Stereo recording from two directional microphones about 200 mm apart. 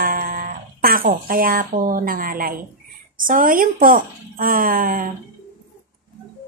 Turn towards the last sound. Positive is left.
turn(degrees=-45)  # may be behind; listen again after turning